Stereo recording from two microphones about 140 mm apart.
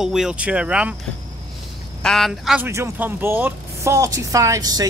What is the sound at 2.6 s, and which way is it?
Speech, 20° right (ahead or behind).